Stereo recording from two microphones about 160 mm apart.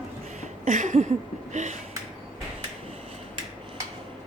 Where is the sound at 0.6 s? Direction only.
50° right (ahead or behind).